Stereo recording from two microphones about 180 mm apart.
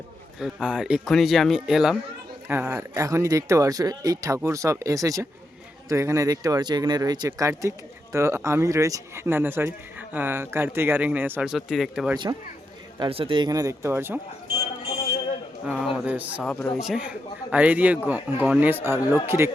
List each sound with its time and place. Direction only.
0.3 s speech: 5° right (ahead or behind)
2.9 s speech: 15° right (ahead or behind)
12.1 s speech: 25° right (ahead or behind)
15.6 s speech: 5° right (ahead or behind)